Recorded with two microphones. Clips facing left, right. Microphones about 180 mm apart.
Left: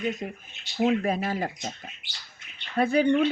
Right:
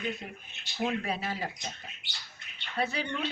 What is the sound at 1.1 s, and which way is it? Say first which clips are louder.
Speech: left 7 dB; 45° left (ahead or behind).